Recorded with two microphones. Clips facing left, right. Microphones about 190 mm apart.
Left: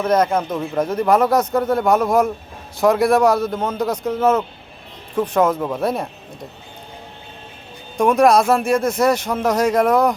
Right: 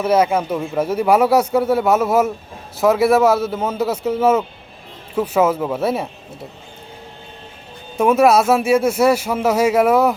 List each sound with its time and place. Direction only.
0.0 s speech: 10° right (ahead or behind)
7.9 s speech: 5° right (ahead or behind)